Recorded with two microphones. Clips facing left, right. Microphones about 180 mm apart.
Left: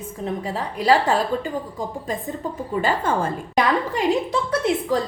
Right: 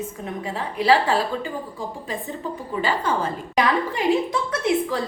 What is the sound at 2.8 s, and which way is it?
Speech, 50° left (ahead or behind).